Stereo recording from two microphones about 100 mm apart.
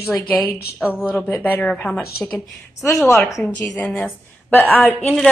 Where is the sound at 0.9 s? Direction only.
20° left (ahead or behind).